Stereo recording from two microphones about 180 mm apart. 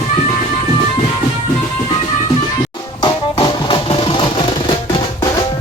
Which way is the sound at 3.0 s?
25° left (ahead or behind).